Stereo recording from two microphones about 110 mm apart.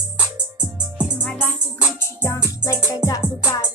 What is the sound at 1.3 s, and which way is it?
Music, 20° left (ahead or behind).